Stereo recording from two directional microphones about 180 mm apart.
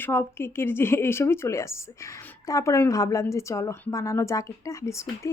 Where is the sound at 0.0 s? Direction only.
15° left (ahead or behind).